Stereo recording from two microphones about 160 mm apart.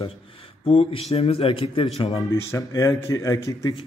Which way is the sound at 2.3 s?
20° left (ahead or behind).